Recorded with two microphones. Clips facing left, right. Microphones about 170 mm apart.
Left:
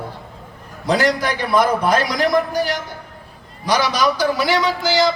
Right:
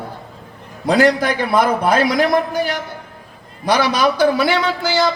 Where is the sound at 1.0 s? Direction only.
55° right (ahead or behind).